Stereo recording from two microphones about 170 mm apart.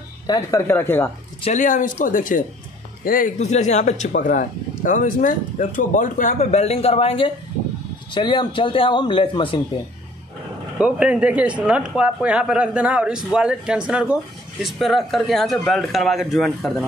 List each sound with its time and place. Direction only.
0.3 s speech: 20° left (ahead or behind)
1.4 s a man's voice: 45° left (ahead or behind); by 9.6 s 30° left (ahead or behind)
10.8 s speech: 5° right (ahead or behind)